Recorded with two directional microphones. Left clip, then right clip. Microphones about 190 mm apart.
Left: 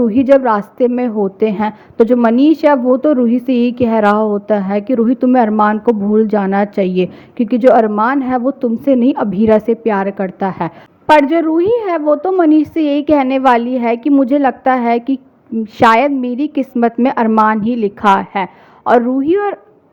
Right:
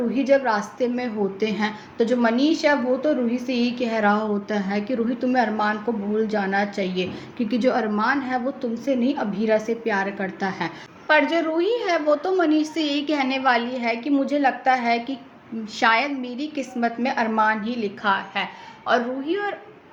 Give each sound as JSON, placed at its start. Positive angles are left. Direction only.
{"t": 0.1, "sound": "a woman's voice", "side_deg": 50}